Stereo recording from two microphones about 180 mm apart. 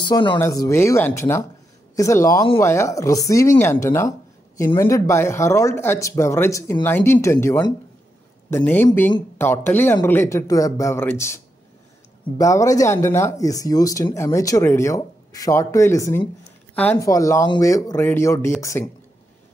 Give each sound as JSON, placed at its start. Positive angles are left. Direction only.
{"t": 0.0, "sound": "speech", "side_deg": 25}